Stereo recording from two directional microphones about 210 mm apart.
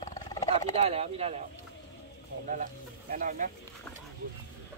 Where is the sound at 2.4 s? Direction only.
40° right (ahead or behind).